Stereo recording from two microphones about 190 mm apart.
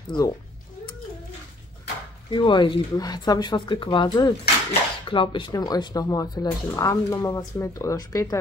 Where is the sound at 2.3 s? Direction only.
25° left (ahead or behind).